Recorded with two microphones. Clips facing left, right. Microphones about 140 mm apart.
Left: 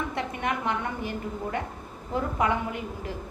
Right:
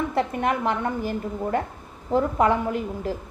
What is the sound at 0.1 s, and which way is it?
A woman's voice, 35° right (ahead or behind).